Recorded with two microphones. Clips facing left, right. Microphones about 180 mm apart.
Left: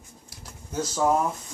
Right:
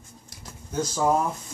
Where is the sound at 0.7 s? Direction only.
5° left (ahead or behind).